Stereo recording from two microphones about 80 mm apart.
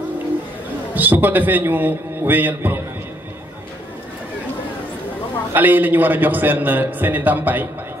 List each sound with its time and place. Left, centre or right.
0.9 s a man's voice: right
5.5 s a man's voice: right